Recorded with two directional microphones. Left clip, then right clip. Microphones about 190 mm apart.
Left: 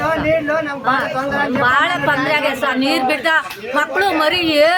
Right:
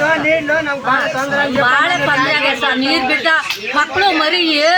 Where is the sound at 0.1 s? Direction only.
55° left (ahead or behind).